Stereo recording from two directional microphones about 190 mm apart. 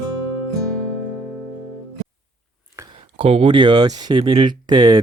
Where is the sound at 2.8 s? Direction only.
10° right (ahead or behind).